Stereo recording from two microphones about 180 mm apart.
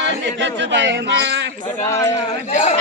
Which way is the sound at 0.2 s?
90° right.